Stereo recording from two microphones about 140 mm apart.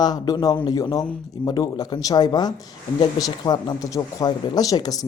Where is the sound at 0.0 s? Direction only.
30° left (ahead or behind).